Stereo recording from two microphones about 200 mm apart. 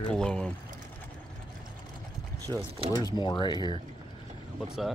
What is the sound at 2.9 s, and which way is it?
Speech, 20° left (ahead or behind).